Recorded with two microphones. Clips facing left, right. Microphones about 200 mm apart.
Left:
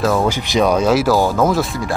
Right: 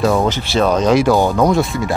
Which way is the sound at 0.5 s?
10° left (ahead or behind).